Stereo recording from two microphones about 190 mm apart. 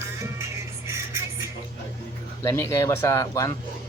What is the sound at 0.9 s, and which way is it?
Music, 15° right (ahead or behind).